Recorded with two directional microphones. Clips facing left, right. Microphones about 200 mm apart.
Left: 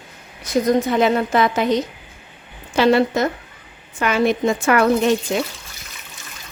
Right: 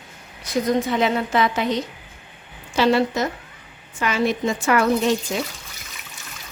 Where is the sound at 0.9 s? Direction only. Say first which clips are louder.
Left 4 dB; 45° left (ahead or behind).